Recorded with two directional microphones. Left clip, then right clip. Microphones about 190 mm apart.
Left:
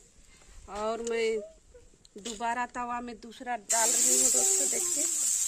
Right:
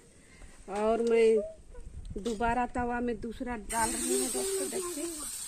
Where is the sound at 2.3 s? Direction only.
50° left (ahead or behind).